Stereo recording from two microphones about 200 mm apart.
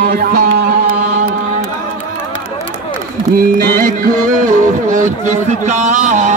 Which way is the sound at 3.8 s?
40° right (ahead or behind).